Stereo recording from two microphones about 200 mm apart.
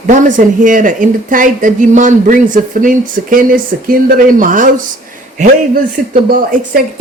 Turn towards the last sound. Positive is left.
turn(degrees=-45)  # may be behind; listen again after turning